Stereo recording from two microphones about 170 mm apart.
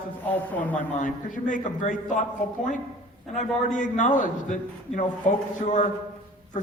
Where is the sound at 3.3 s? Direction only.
50° left (ahead or behind).